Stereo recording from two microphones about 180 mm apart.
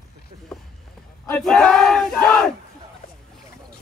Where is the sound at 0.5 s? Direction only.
Centre (ahead or behind).